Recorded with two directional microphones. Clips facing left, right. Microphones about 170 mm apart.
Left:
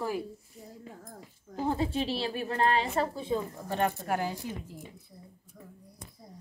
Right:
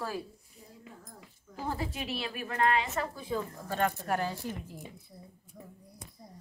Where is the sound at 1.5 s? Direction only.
20° left (ahead or behind).